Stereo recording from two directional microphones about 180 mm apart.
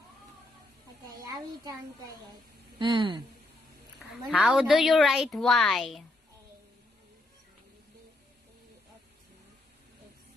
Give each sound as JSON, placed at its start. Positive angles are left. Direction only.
{"t": 1.0, "sound": "a sound", "side_deg": -20}
{"t": 2.8, "sound": "speech", "side_deg": -30}
{"t": 4.3, "sound": "a woman's voice", "side_deg": -5}